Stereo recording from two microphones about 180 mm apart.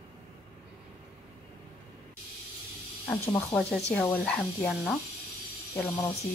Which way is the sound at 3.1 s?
15° left (ahead or behind).